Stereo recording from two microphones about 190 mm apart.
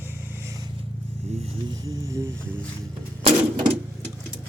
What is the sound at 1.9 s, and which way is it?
Speech, 15° right (ahead or behind).